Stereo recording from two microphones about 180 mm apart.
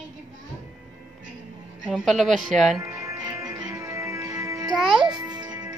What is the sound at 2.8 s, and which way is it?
Music, 15° right (ahead or behind).